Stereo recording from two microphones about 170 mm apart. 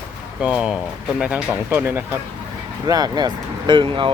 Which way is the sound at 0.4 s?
5° right (ahead or behind).